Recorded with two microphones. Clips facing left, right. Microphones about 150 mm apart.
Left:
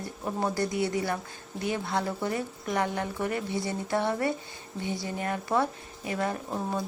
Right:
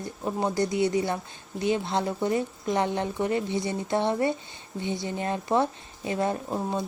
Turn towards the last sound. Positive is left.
turn(degrees=-20)  # may be behind; listen again after turning